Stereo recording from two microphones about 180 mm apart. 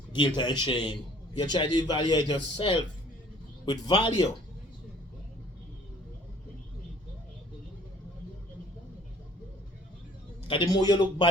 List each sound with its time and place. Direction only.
0.1 s a man's voice: 25° left (ahead or behind)
10.5 s a man's voice: 25° left (ahead or behind)